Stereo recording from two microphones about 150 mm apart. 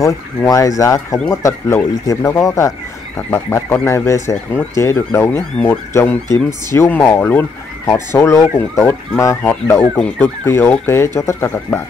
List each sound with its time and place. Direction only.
0.0 s speech: 20° left (ahead or behind)